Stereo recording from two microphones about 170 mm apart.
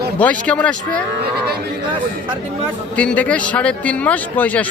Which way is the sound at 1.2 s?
70° right (ahead or behind).